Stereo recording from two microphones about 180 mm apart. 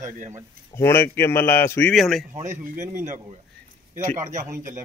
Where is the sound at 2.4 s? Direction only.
45° right (ahead or behind).